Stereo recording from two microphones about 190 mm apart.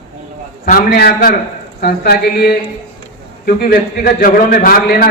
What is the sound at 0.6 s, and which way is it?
A man's voice, 55° left (ahead or behind).